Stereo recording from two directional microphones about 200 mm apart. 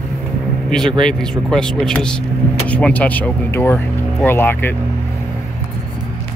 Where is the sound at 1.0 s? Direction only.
5° left (ahead or behind).